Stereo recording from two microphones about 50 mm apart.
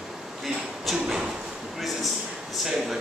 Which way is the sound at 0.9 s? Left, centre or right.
Centre.